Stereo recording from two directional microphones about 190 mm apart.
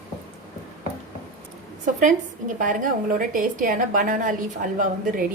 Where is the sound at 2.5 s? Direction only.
45° right (ahead or behind).